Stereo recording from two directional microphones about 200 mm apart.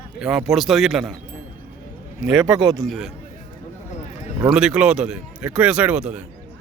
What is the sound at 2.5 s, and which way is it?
Speech, 20° right (ahead or behind).